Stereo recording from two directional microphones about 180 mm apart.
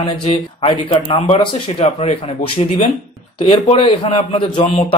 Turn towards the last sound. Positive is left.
turn(degrees=30)  # may be behind; listen again after turning